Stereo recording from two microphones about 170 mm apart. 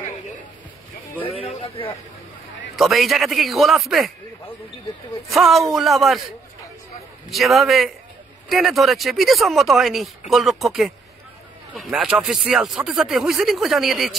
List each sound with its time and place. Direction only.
1.2 s a sound: 35° left (ahead or behind)
2.7 s speech: centre (ahead or behind)
5.3 s speech: centre (ahead or behind)